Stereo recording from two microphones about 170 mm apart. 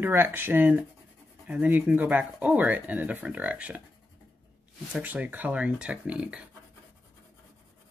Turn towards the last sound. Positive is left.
turn(degrees=-5)  # may be behind; listen again after turning